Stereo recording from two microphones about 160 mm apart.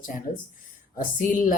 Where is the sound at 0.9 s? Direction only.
60° left (ahead or behind).